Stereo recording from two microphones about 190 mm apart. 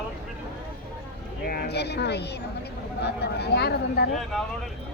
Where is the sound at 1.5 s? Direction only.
55° left (ahead or behind).